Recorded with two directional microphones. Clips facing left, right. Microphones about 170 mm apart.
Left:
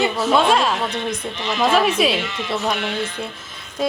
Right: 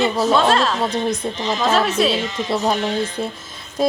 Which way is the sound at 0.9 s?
40° right (ahead or behind).